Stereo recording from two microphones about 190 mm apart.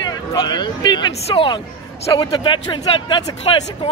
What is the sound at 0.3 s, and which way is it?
Speech, 20° left (ahead or behind).